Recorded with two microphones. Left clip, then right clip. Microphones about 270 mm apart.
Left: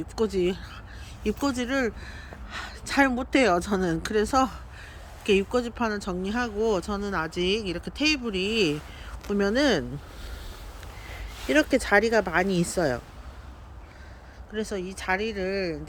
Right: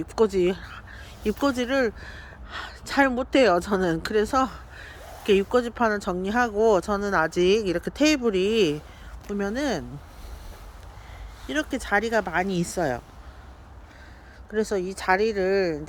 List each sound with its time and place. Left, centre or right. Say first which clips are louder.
0.2 s speech: right 4 dB; centre
9.2 s speech: left 4 dB; centre
11.4 s speech: left 6 dB; centre
14.5 s speech: right 6 dB; centre